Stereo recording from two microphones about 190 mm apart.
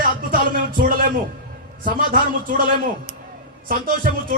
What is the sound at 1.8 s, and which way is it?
Speech, 45° right (ahead or behind).